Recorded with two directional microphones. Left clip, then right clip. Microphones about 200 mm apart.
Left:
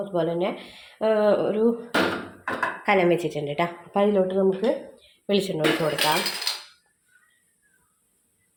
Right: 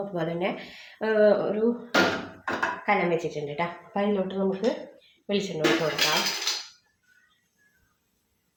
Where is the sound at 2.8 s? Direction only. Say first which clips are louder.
Left 5 dB; 50° left (ahead or behind).